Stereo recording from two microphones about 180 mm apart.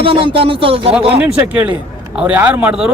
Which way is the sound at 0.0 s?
30° right (ahead or behind).